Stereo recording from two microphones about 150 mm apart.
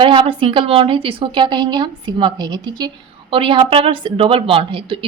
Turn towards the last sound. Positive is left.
turn(degrees=-35)  # may be behind; listen again after turning